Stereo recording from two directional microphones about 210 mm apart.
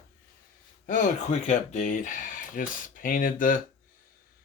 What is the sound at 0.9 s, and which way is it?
Speech, 40° left (ahead or behind).